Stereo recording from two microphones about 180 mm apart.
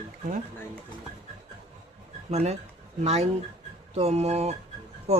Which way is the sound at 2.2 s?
35° right (ahead or behind).